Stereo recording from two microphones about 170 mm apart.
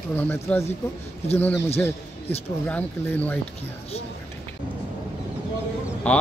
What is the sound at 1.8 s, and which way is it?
Speech, 10° left (ahead or behind).